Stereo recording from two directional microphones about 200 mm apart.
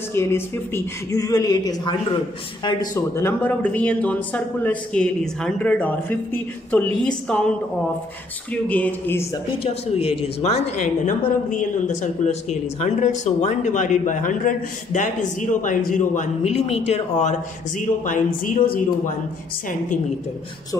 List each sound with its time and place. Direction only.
0.1 s speech: 10° left (ahead or behind)
8.6 s speech: 5° left (ahead or behind)
9.6 s a woman's voice: 30° left (ahead or behind)